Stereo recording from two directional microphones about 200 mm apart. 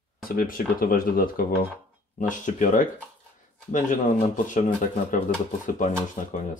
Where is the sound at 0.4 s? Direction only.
45° left (ahead or behind).